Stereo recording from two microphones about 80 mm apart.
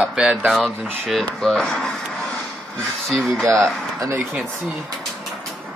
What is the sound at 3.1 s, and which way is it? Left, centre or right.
Speech, centre.